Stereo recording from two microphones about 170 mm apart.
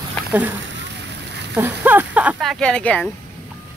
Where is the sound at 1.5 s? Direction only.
10° right (ahead or behind).